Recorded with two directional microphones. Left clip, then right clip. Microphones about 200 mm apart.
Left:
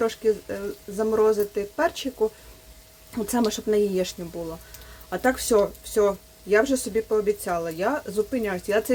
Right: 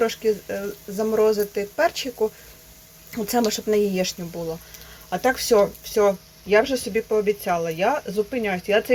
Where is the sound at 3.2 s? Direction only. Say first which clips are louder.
Right 3 dB; 15° left (ahead or behind).